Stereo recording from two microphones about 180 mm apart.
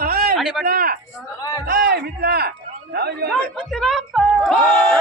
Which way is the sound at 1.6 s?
60° right (ahead or behind).